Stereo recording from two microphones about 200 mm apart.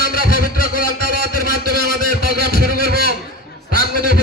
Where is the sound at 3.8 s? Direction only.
55° right (ahead or behind).